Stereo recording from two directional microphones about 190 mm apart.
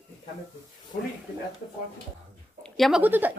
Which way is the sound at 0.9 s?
40° left (ahead or behind).